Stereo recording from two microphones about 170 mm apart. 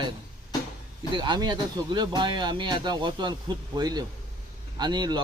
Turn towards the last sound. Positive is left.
turn(degrees=-25)  # may be behind; listen again after turning